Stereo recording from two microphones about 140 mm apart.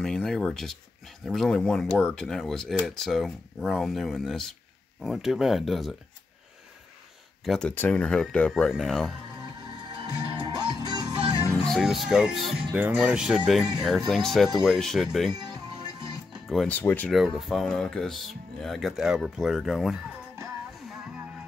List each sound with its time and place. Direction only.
0.0 s speech: 5° left (ahead or behind)
7.4 s speech: 5° left (ahead or behind)
10.3 s music: 30° right (ahead or behind)
11.6 s speech: centre (ahead or behind)
16.4 s speech: centre (ahead or behind)
16.7 s speech: 15° left (ahead or behind)
17.1 s speech: centre (ahead or behind)